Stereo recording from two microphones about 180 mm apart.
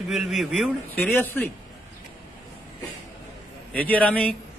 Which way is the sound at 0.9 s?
10° left (ahead or behind).